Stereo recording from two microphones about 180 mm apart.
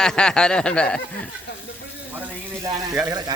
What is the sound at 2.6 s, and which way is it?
Speech, 15° right (ahead or behind).